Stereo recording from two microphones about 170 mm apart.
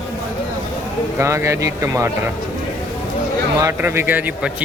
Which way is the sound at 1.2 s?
15° right (ahead or behind).